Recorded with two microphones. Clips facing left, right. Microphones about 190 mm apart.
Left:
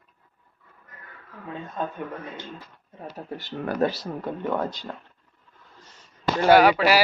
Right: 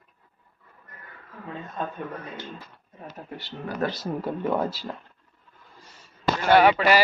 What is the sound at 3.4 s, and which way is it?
Speech, 50° left (ahead or behind).